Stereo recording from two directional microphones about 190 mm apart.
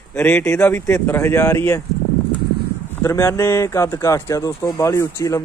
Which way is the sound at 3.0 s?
15° left (ahead or behind).